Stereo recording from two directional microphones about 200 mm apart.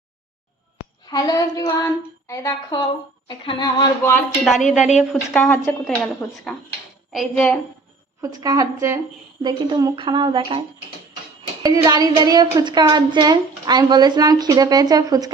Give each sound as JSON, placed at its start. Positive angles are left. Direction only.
{"t": 1.0, "sound": "a woman's voice", "side_deg": 20}
{"t": 4.1, "sound": "a woman's voice", "side_deg": 0}
{"t": 8.2, "sound": "a woman's voice", "side_deg": -20}
{"t": 11.6, "sound": "a woman's voice", "side_deg": -20}